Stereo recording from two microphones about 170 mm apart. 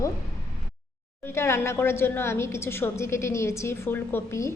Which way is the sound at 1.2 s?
15° left (ahead or behind).